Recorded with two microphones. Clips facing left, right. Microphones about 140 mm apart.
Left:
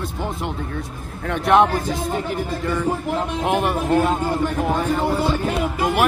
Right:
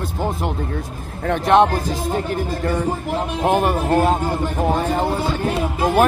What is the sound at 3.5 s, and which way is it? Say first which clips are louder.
Speech: right 4 dB; 35° right (ahead or behind).